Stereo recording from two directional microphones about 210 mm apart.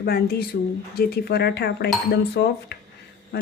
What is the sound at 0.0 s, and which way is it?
A child's voice, 50° left (ahead or behind).